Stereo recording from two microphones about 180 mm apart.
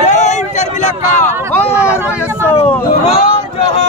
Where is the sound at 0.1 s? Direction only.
40° left (ahead or behind).